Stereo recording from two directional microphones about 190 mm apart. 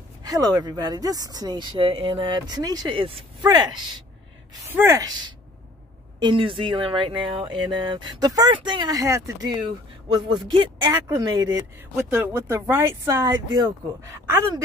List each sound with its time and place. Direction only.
0.2 s speech: 20° right (ahead or behind)
11.9 s speech: 10° right (ahead or behind)